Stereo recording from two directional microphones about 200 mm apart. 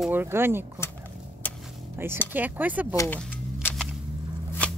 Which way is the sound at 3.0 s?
10° left (ahead or behind).